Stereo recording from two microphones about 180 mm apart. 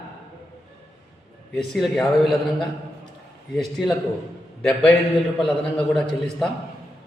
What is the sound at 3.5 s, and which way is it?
A man's voice, centre (ahead or behind).